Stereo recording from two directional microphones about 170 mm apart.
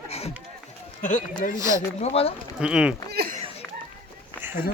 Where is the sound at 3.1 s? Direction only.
65° right (ahead or behind).